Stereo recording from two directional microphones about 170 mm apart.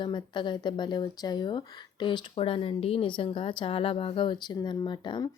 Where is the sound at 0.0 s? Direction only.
25° left (ahead or behind).